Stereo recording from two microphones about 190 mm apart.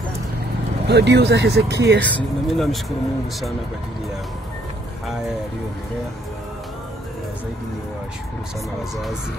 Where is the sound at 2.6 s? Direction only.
Centre (ahead or behind).